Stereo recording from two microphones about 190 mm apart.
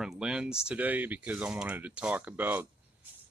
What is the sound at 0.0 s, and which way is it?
Speech, 5° right (ahead or behind).